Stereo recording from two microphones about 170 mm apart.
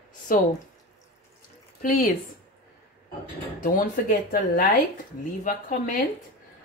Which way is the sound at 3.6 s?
55° left (ahead or behind).